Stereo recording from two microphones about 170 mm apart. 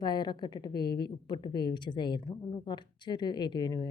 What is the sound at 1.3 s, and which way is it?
Speech, 25° left (ahead or behind).